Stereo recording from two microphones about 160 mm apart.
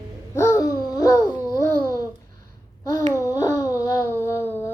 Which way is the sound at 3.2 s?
20° left (ahead or behind).